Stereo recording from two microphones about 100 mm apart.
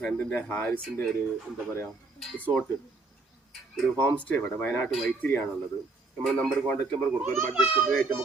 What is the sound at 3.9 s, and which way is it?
A man's voice, 15° left (ahead or behind).